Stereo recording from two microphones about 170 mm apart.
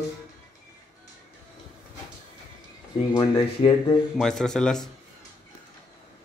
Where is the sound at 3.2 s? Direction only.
30° left (ahead or behind).